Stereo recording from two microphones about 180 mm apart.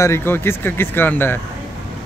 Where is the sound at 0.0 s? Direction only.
15° left (ahead or behind).